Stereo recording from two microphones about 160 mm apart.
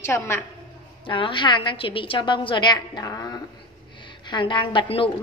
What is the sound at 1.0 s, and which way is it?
A woman's voice, 30° left (ahead or behind).